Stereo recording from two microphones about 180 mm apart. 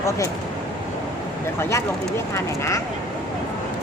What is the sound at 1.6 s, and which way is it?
Speech, 15° left (ahead or behind).